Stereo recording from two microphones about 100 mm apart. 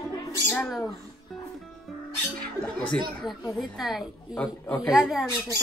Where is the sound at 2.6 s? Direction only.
10° left (ahead or behind).